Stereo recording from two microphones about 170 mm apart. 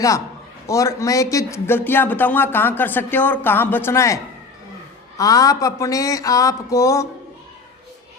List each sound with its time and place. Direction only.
0.7 s speech: 20° left (ahead or behind)